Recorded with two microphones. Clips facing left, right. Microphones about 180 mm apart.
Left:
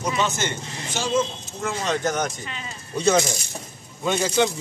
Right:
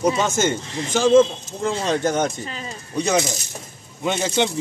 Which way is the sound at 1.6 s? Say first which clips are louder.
Right 4 dB; 30° right (ahead or behind).